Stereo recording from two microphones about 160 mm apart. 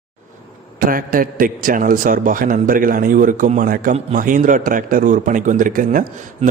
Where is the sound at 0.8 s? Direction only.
60° right (ahead or behind).